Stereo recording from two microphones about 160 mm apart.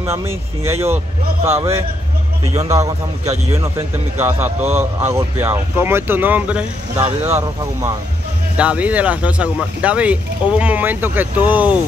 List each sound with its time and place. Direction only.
0.0 s a man's voice: 15° right (ahead or behind)